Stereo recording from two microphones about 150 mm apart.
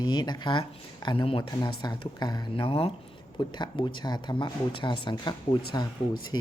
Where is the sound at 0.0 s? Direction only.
30° left (ahead or behind).